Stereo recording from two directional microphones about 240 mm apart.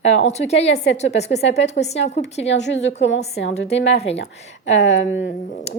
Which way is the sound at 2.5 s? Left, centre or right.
Left.